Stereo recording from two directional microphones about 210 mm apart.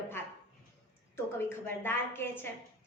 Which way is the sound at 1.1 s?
10° left (ahead or behind).